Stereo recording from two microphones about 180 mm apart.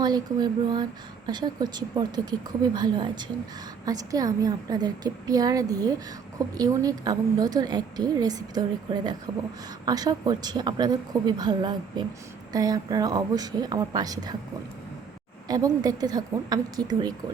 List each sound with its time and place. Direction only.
0.0 s speech: 25° right (ahead or behind)
15.4 s speech: 20° right (ahead or behind)